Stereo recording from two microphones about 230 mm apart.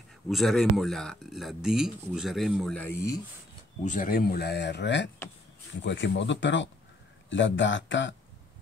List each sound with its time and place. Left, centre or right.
0.3 s speech: centre
3.8 s speech: left